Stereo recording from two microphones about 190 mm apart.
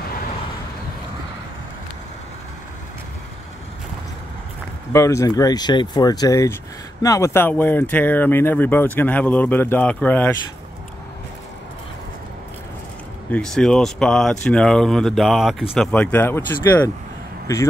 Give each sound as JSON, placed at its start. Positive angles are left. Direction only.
{"t": 4.9, "sound": "speech", "side_deg": 15}
{"t": 13.3, "sound": "speech", "side_deg": 5}